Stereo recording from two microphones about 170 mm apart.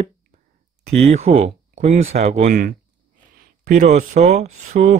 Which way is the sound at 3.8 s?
40° right (ahead or behind).